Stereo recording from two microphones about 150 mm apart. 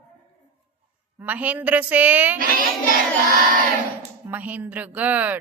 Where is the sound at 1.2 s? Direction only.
10° right (ahead or behind).